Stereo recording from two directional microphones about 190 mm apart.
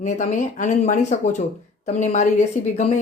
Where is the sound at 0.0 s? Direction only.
40° left (ahead or behind).